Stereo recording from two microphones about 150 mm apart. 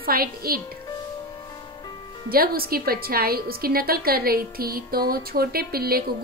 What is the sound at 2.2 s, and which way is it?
A woman's voice, 80° right.